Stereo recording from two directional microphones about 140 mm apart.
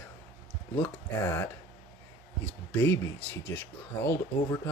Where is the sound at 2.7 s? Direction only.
20° left (ahead or behind).